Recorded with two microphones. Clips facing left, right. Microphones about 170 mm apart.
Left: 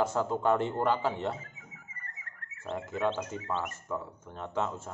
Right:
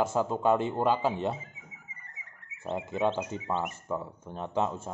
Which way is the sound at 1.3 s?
10° right (ahead or behind).